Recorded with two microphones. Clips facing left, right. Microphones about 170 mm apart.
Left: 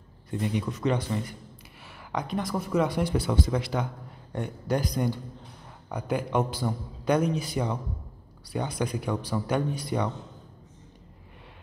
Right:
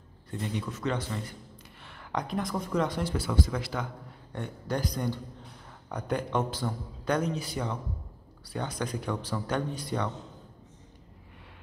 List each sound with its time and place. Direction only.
0.3 s a man's voice: 15° left (ahead or behind)
1.9 s a man's voice: 5° left (ahead or behind)